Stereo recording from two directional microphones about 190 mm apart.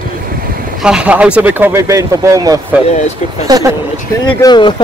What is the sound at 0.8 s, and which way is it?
Speech, 5° right (ahead or behind).